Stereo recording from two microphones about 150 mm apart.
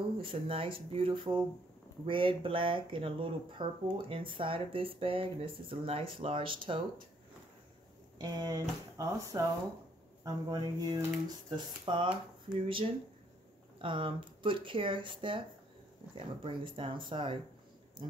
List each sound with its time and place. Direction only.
0.2 s speech: 40° right (ahead or behind)
8.2 s speech: 30° right (ahead or behind)